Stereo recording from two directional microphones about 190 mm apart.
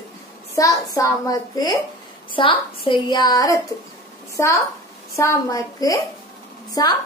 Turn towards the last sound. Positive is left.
turn(degrees=20)  # may be behind; listen again after turning